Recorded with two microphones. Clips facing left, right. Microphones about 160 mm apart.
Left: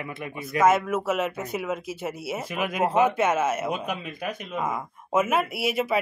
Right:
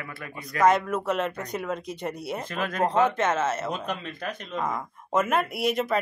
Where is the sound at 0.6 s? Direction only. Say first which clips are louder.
Left 1 dB; 5° left (ahead or behind).